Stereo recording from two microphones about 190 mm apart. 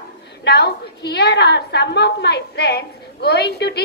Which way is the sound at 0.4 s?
60° left (ahead or behind).